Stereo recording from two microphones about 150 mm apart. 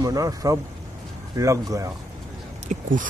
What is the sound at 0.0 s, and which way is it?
Speech, 25° right (ahead or behind).